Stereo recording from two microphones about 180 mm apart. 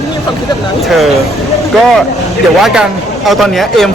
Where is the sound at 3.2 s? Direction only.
Centre (ahead or behind).